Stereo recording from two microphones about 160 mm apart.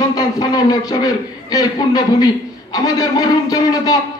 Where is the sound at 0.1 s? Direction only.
25° left (ahead or behind).